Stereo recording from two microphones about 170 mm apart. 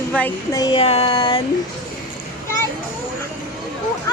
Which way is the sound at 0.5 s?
25° left (ahead or behind).